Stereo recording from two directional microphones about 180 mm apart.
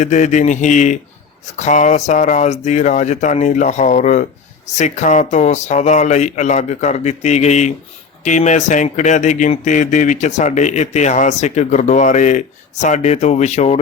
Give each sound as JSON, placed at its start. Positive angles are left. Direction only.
{"t": 0.0, "sound": "speech", "side_deg": 40}